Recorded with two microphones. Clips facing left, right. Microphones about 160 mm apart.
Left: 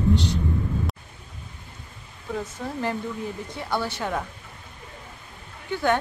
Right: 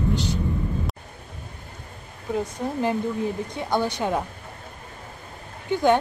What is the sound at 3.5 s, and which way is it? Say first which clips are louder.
Speech: right 4 dB; 20° right (ahead or behind).